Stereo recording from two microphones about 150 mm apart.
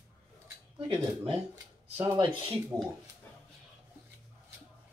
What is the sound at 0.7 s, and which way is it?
Speech, 35° right (ahead or behind).